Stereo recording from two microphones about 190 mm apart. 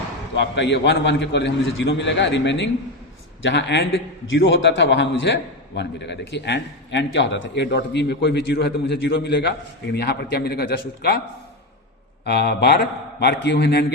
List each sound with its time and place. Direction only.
0.3 s a man's voice: 65° left (ahead or behind)
4.3 s a man's voice: 80° left; by 11.2 s 55° left (ahead or behind)
12.2 s a man's voice: 60° left (ahead or behind)